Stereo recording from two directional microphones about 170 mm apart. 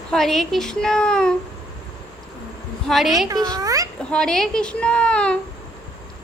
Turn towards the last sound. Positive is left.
turn(degrees=5)  # may be behind; listen again after turning